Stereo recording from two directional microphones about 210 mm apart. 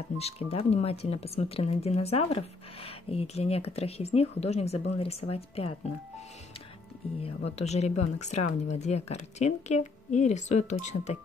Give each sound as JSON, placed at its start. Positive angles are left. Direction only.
{"t": 0.2, "sound": "speech", "side_deg": 30}
{"t": 7.2, "sound": "speech", "side_deg": 30}